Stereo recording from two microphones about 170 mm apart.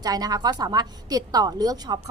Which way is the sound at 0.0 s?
20° right (ahead or behind).